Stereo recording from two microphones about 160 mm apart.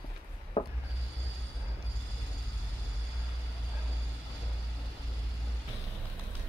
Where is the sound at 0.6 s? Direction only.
35° left (ahead or behind).